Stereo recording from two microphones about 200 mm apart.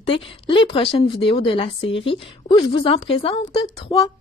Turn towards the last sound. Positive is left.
turn(degrees=30)  # may be behind; listen again after turning